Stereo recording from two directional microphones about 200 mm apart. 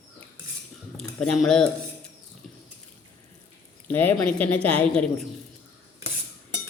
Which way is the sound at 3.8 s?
10° left (ahead or behind).